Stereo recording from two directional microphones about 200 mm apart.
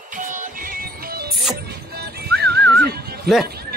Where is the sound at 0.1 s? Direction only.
40° right (ahead or behind).